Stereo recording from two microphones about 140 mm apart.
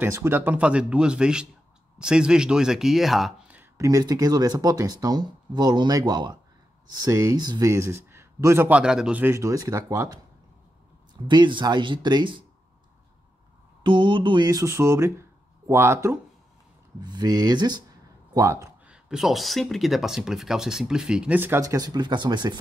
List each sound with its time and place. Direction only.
0.0 s speech: 15° right (ahead or behind)
3.7 s speech: 25° right (ahead or behind)
11.2 s speech: 35° right (ahead or behind)
13.8 s speech: 35° right (ahead or behind); by 16.2 s 20° right (ahead or behind)
17.0 s a man's voice: 30° right (ahead or behind)
18.9 s speech: 5° right (ahead or behind); by 22.6 s 30° right (ahead or behind)